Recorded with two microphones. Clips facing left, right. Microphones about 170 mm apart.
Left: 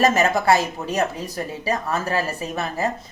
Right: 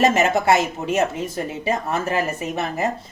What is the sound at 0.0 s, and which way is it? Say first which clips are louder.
Speech: right 1 dB; 20° right (ahead or behind).